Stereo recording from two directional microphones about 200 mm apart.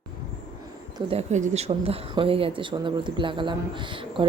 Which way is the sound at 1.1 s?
35° right (ahead or behind).